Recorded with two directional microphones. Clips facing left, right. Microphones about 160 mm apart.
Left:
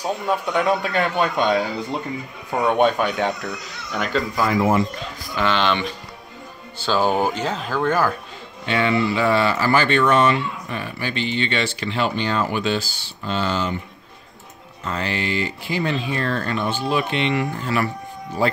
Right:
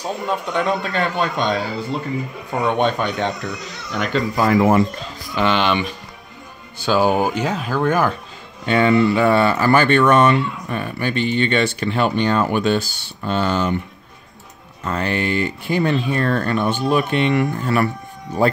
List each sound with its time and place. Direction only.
0.0 s a man's voice: 10° left (ahead or behind)
5.3 s speech: 15° right (ahead or behind)
8.6 s speech: 45° right (ahead or behind)
14.9 s speech: 50° right (ahead or behind)